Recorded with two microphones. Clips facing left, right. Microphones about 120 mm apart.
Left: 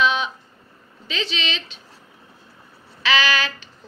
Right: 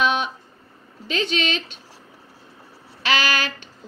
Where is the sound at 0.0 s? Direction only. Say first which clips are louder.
Left 1 dB; 50° right (ahead or behind).